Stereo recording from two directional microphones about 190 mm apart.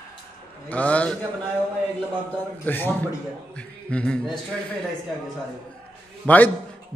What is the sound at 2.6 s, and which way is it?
A man's voice, 10° left (ahead or behind).